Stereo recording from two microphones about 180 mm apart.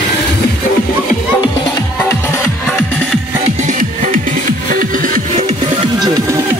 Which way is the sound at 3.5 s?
45° right (ahead or behind).